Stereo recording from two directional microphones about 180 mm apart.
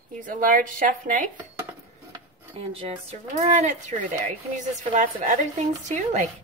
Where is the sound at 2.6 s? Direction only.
35° right (ahead or behind).